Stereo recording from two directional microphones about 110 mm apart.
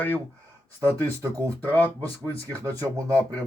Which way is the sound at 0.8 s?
30° right (ahead or behind).